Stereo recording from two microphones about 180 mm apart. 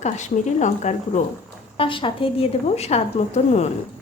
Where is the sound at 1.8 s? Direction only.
30° left (ahead or behind).